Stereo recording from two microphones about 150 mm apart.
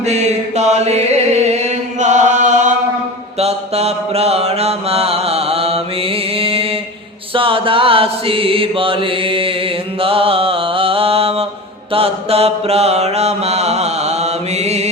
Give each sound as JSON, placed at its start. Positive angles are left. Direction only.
{"t": 0.0, "sound": "music", "side_deg": -50}
{"t": 3.3, "sound": "mantra", "side_deg": -45}
{"t": 7.3, "sound": "chant", "side_deg": -35}
{"t": 11.9, "sound": "mantra", "side_deg": -40}